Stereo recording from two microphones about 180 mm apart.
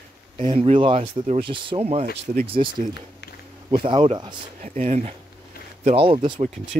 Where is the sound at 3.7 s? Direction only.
30° right (ahead or behind).